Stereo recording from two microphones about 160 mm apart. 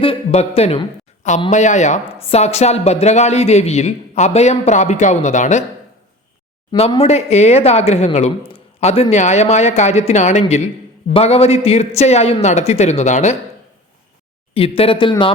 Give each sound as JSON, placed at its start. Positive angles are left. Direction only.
{"t": 0.0, "sound": "a man's voice", "side_deg": 40}
{"t": 6.7, "sound": "a man's voice", "side_deg": 40}
{"t": 14.5, "sound": "a man's voice", "side_deg": 35}